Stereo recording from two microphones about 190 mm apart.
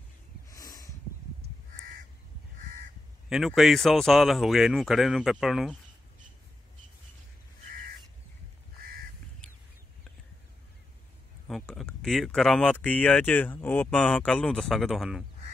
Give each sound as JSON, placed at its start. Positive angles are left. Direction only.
{"t": 0.5, "sound": "a sound", "side_deg": 20}
{"t": 1.4, "sound": "crow", "side_deg": -50}
{"t": 3.3, "sound": "speech", "side_deg": 0}
{"t": 11.4, "sound": "speech", "side_deg": 0}